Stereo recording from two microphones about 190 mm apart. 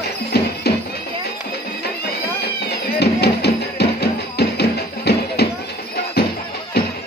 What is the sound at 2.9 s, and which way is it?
Music, 60° left (ahead or behind).